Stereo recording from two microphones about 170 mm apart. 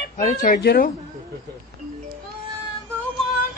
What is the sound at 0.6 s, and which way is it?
Speech, 65° left (ahead or behind).